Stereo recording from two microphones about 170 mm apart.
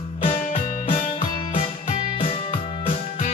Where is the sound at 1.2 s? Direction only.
35° left (ahead or behind).